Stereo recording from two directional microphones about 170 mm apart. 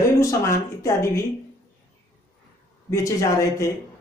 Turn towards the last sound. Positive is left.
turn(degrees=15)  # may be behind; listen again after turning